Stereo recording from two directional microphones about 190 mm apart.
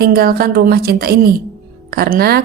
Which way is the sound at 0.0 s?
55° right (ahead or behind).